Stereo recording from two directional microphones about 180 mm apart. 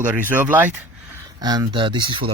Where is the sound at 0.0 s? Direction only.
10° right (ahead or behind).